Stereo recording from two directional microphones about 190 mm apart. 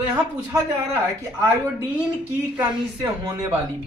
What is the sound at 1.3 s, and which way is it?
A man's voice, 15° right (ahead or behind).